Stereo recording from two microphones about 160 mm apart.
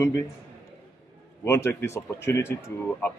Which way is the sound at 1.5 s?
15° left (ahead or behind).